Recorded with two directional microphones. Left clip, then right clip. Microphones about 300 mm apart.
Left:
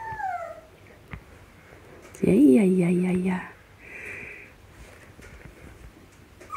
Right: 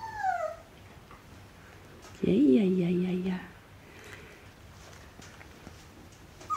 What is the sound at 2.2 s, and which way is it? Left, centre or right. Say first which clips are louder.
Speech: left 6 dB; left.